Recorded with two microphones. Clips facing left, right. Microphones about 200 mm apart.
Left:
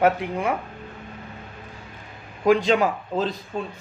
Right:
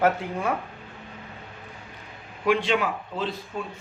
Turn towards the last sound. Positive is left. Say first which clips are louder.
# left 4 dB
turn(degrees=40)  # may be behind; listen again after turning